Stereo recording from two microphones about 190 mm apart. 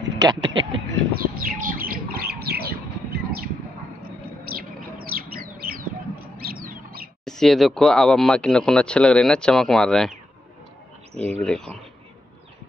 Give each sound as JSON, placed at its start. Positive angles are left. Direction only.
{"t": 0.2, "sound": "a sound", "side_deg": -20}
{"t": 1.2, "sound": "bird", "side_deg": -50}
{"t": 4.5, "sound": "bird", "side_deg": -50}
{"t": 6.3, "sound": "a sound", "side_deg": -50}
{"t": 7.2, "sound": "speech", "side_deg": 0}
{"t": 11.1, "sound": "speech", "side_deg": -35}
{"t": 11.4, "sound": "speech", "side_deg": 5}